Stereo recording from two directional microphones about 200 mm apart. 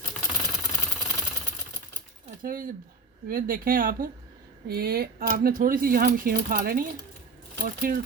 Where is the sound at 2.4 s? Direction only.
45° right (ahead or behind).